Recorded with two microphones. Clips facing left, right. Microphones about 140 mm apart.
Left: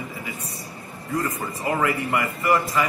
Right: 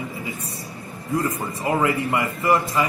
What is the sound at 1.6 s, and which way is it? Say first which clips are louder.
A man's voice: right 2 dB; 25° right (ahead or behind).